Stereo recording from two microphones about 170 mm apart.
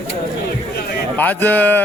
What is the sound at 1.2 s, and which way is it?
Speech, 10° left (ahead or behind).